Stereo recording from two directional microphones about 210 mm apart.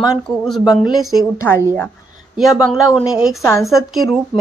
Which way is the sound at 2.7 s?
Centre (ahead or behind).